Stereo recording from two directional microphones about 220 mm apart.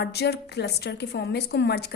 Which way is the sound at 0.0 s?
45° left (ahead or behind).